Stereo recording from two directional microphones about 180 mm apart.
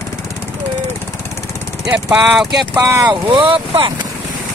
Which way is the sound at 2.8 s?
15° right (ahead or behind).